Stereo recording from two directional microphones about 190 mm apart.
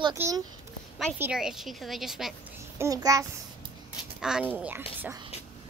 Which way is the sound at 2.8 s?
20° right (ahead or behind).